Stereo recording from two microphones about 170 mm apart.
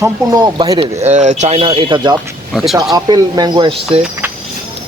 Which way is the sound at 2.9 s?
25° right (ahead or behind).